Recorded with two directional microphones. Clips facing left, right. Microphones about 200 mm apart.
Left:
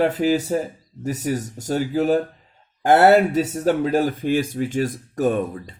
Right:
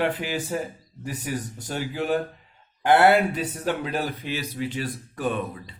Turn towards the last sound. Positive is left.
turn(degrees=45)  # may be behind; listen again after turning